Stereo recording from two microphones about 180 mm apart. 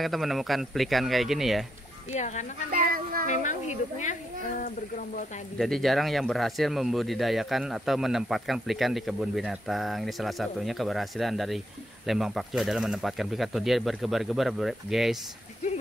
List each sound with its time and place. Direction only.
0.0 s speech: centre (ahead or behind)
2.1 s speech: 40° left (ahead or behind)
2.7 s speech: 50° right (ahead or behind)
3.3 s speech: 40° left (ahead or behind)
5.6 s speech: centre (ahead or behind)